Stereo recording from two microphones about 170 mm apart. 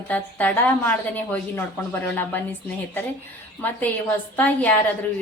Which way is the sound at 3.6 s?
10° left (ahead or behind).